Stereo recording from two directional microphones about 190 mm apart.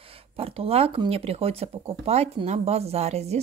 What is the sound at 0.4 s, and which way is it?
Speech, 30° right (ahead or behind).